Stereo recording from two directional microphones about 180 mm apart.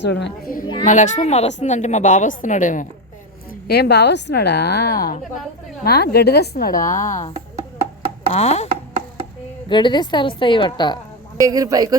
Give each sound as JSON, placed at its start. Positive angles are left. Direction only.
{"t": 0.0, "sound": "a woman's voice", "side_deg": 75}
{"t": 0.9, "sound": "a woman's voice", "side_deg": 45}
{"t": 3.5, "sound": "a woman's voice", "side_deg": 65}
{"t": 6.7, "sound": "a woman's voice", "side_deg": 15}
{"t": 7.3, "sound": "music", "side_deg": -35}
{"t": 8.3, "sound": "speech", "side_deg": 35}
{"t": 8.7, "sound": "music", "side_deg": -35}
{"t": 9.6, "sound": "a woman's voice", "side_deg": 25}
{"t": 11.3, "sound": "a man's voice", "side_deg": -20}